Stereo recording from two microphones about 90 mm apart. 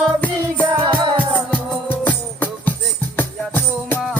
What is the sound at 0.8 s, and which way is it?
Music, 65° right (ahead or behind).